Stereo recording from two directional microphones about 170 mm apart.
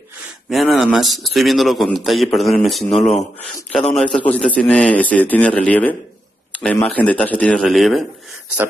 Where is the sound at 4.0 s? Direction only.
5° left (ahead or behind).